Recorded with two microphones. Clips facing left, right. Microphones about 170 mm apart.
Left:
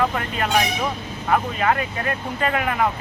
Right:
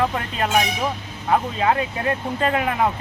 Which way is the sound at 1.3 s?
25° right (ahead or behind).